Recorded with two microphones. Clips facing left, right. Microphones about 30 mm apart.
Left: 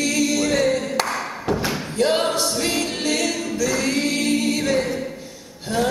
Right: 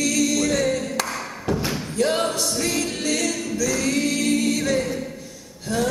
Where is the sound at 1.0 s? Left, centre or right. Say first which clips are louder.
Left 3 dB; centre.